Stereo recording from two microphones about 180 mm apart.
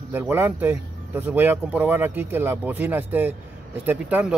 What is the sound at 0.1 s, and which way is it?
Speech, 10° right (ahead or behind).